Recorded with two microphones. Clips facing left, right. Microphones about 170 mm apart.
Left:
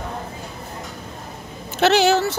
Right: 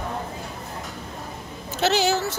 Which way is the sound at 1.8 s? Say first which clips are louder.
Left 5 dB; 65° left (ahead or behind).